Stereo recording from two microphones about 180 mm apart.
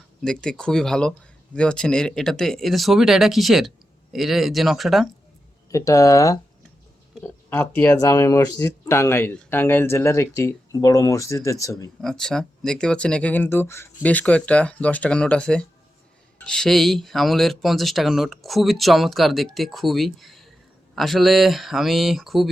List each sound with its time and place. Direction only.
0.3 s speech: 5° left (ahead or behind)
5.7 s speech: 15° left (ahead or behind)
7.2 s a sound: 10° left (ahead or behind)
7.8 s speech: 10° left (ahead or behind)
12.0 s speech: 5° left (ahead or behind)